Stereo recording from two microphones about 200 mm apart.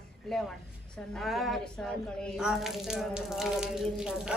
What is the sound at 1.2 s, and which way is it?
Water tap, centre (ahead or behind).